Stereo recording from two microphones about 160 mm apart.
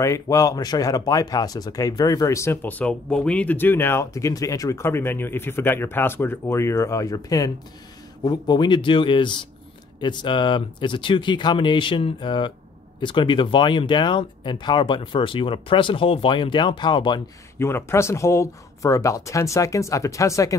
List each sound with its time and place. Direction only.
0.0 s speech: 20° left (ahead or behind)
17.6 s speech: 15° left (ahead or behind)